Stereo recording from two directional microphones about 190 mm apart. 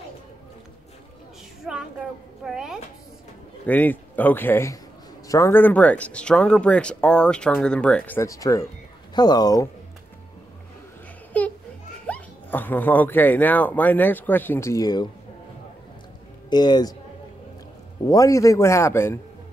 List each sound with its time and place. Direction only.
1.6 s child singing: centre (ahead or behind)
2.4 s a woman's voice: 5° right (ahead or behind)
3.6 s speech: 10° left (ahead or behind)
11.3 s a sound: 10° left (ahead or behind)
12.1 s speech: 10° left (ahead or behind)
16.4 s speech: 20° left (ahead or behind)
18.0 s speech: 15° left (ahead or behind)